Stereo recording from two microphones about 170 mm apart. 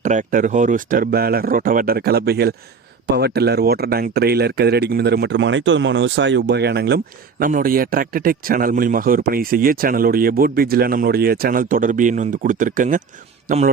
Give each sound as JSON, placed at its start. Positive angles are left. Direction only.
{"t": 0.0, "sound": "a man's voice", "side_deg": -45}